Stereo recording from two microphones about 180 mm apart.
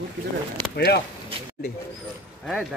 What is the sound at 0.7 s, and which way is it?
Speech, 65° left (ahead or behind).